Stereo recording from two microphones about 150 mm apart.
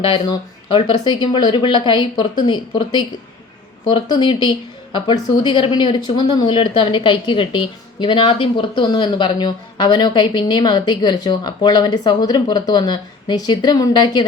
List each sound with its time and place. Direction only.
0.0 s speech: 30° left (ahead or behind)